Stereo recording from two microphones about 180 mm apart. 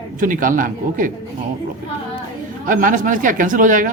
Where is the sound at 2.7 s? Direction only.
50° right (ahead or behind).